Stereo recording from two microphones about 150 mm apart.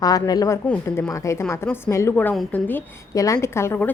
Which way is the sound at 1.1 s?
20° left (ahead or behind).